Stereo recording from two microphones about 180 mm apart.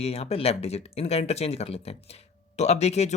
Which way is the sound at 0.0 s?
35° left (ahead or behind).